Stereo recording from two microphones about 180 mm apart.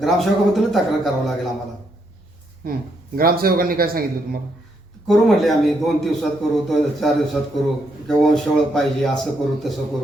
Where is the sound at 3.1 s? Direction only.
55° right (ahead or behind).